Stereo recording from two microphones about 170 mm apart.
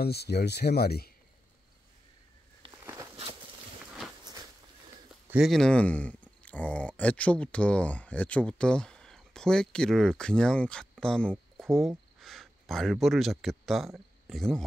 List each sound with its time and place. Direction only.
0.0 s speech: 70° left (ahead or behind)
2.8 s walk: 15° right (ahead or behind)
5.3 s speech: centre (ahead or behind)